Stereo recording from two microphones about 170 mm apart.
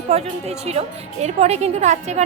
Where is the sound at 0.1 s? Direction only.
40° right (ahead or behind).